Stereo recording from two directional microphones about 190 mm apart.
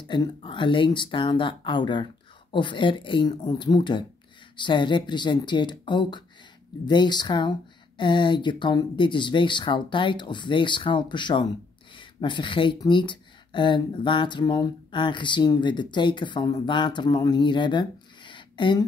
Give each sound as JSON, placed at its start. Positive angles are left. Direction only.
{"t": 0.0, "sound": "speech", "side_deg": 25}